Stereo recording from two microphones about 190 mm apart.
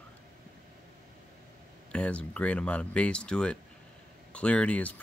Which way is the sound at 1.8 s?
5° left (ahead or behind).